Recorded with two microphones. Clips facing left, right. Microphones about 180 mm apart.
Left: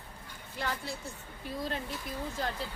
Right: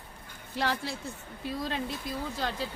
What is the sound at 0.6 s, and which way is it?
Speech, 85° right.